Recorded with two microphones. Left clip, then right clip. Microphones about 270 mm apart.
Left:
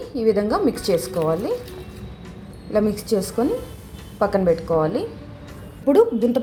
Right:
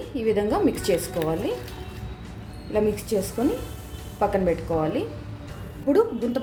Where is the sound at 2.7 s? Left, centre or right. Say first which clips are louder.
Left 3 dB; centre.